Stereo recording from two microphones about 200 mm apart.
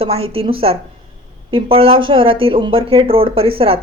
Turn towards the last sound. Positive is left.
turn(degrees=-30)  # may be behind; listen again after turning